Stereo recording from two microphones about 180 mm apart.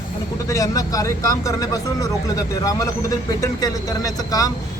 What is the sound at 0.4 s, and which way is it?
Speech, 20° left (ahead or behind).